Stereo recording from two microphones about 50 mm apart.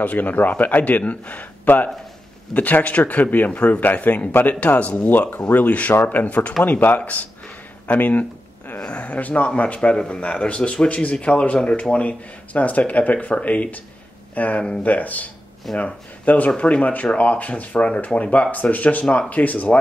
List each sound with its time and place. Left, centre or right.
0.0 s a man's voice: left
7.9 s a sound: left
8.7 s a man's voice: left